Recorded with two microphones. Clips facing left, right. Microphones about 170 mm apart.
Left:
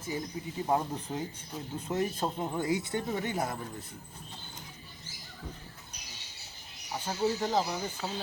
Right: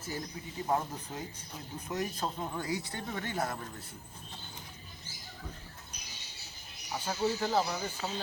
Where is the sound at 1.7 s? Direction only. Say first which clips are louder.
Left 4 dB; 25° left (ahead or behind).